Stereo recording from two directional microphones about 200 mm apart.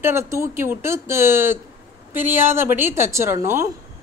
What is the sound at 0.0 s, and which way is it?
A woman's voice, 15° right (ahead or behind).